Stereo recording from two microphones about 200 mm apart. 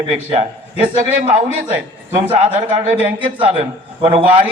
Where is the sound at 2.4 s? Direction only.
35° right (ahead or behind).